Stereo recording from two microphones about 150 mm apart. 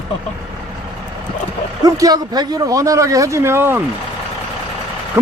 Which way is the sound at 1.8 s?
25° right (ahead or behind).